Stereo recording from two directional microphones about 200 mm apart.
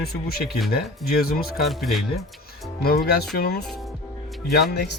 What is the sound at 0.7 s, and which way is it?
Speech, 50° left (ahead or behind).